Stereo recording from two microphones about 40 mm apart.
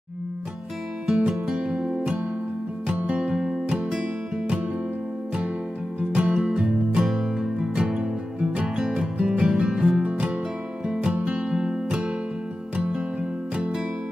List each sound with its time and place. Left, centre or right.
1.0 s music: centre
1.6 s music: right
3.2 s music: centre
5.9 s music: right